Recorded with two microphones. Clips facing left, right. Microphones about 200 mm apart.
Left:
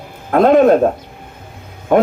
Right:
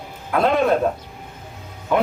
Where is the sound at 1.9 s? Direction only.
50° left (ahead or behind).